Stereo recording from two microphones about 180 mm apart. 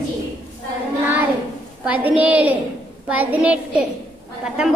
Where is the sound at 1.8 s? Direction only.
5° right (ahead or behind).